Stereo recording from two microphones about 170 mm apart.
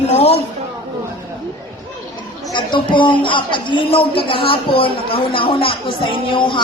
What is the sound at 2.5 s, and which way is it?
Speech, 30° left (ahead or behind).